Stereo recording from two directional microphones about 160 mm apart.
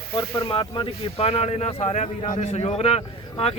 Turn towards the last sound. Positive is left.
turn(degrees=40)  # may be behind; listen again after turning